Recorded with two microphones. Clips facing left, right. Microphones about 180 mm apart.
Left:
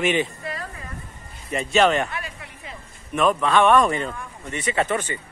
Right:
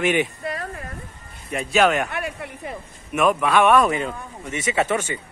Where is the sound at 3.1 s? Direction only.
10° right (ahead or behind).